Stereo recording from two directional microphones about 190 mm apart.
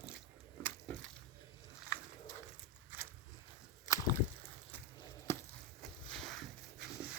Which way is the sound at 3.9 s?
20° left (ahead or behind).